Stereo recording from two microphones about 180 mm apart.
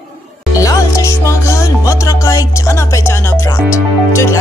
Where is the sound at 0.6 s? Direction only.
20° left (ahead or behind).